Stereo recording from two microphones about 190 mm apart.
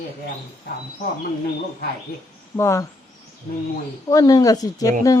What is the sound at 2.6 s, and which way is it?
Speech, 15° left (ahead or behind).